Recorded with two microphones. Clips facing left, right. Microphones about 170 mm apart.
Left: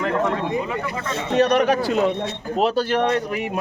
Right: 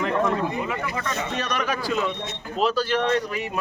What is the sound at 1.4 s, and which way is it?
Speech, 60° left (ahead or behind).